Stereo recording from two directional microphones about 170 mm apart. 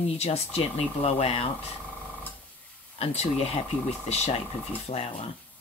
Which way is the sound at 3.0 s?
35° left (ahead or behind).